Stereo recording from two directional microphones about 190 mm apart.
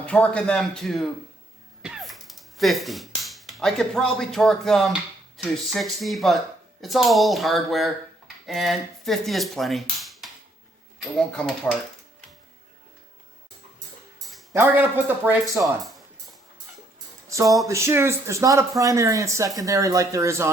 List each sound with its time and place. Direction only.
0.0 s speech: 5° left (ahead or behind)
1.8 s a sound: centre (ahead or behind)
5.4 s speech: centre (ahead or behind)
14.5 s speech: 10° right (ahead or behind)
17.2 s music: 15° right (ahead or behind)
17.7 s speech: 15° right (ahead or behind)